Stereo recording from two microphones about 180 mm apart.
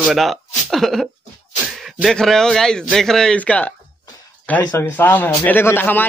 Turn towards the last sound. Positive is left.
turn(degrees=10)  # may be behind; listen again after turning